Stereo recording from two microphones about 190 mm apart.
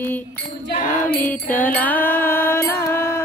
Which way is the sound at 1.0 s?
10° left (ahead or behind).